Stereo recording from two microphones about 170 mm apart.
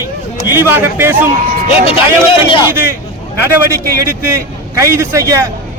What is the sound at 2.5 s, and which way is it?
Speech, 30° left (ahead or behind).